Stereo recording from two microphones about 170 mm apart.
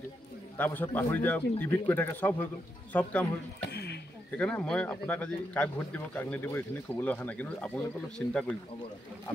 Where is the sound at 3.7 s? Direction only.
75° left (ahead or behind).